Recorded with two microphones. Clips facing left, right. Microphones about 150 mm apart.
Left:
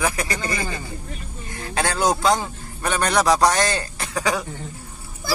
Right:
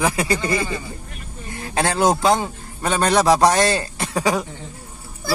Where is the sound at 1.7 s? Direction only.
25° right (ahead or behind).